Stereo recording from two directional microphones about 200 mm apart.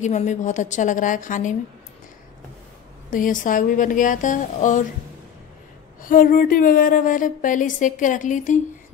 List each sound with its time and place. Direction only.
0.0 s a woman's voice: 35° left (ahead or behind)
3.1 s a woman's voice: 40° left (ahead or behind)
6.0 s a woman's voice: 45° left (ahead or behind)